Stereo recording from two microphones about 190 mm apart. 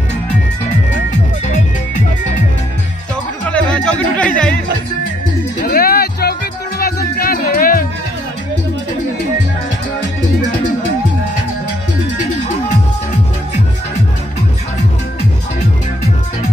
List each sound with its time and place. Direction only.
3.4 s music: 5° left (ahead or behind)
5.6 s music: 50° left (ahead or behind)